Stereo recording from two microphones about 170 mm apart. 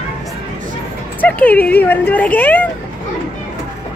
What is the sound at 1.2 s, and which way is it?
Speech, 10° left (ahead or behind).